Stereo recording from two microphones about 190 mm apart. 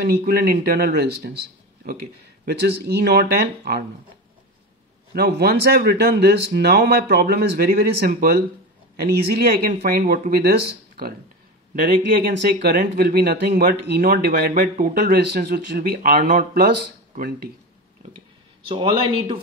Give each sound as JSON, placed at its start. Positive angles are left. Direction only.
{"t": 0.0, "sound": "a man's voice", "side_deg": -55}
{"t": 5.1, "sound": "a man's voice", "side_deg": -55}
{"t": 18.7, "sound": "a man's voice", "side_deg": -25}